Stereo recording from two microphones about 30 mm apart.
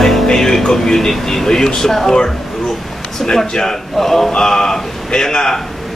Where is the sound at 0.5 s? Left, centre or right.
Centre.